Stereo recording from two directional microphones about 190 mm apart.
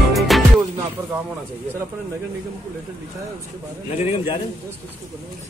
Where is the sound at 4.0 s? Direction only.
35° left (ahead or behind).